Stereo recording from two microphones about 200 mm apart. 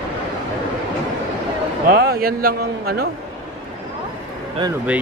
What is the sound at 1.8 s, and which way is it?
A man's voice, 50° right (ahead or behind).